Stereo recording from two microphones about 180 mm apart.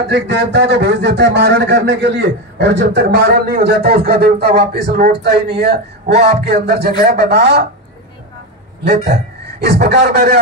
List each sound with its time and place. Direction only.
0.1 s a man's voice: 70° right (ahead or behind)
8.8 s a man's voice: 65° right (ahead or behind)